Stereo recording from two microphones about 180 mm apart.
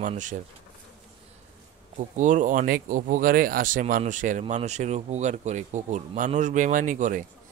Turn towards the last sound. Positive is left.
turn(degrees=-45)  # may be behind; listen again after turning